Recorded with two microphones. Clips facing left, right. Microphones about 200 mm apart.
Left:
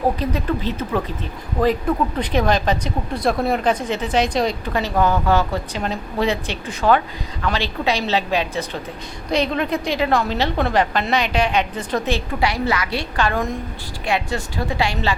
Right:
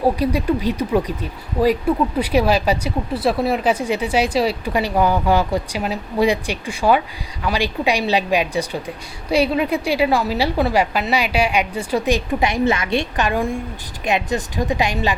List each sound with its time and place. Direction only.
0.0 s speech: 10° right (ahead or behind)